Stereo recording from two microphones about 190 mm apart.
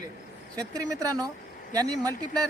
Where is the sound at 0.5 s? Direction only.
20° right (ahead or behind).